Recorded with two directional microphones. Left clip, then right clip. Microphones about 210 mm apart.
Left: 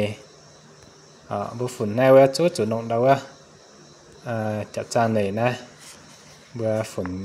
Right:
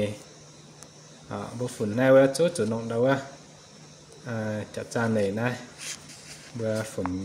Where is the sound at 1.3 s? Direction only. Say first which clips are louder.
Left 6 dB; 30° left (ahead or behind).